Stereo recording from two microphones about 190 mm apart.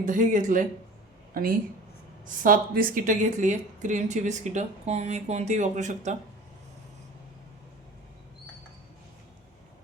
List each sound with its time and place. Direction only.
0.0 s a woman's voice: 40° right (ahead or behind)